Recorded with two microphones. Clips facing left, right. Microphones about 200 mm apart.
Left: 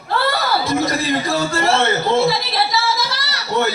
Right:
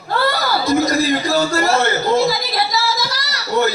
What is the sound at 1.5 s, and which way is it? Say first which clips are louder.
A man's voice: right 1 dB; 30° left (ahead or behind).